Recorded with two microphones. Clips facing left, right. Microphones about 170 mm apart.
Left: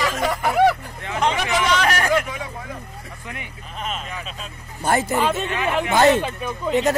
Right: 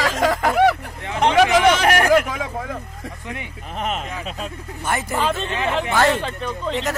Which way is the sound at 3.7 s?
65° right (ahead or behind).